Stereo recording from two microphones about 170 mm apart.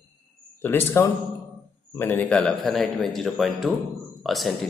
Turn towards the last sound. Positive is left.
turn(degrees=0)  # may be behind; listen again after turning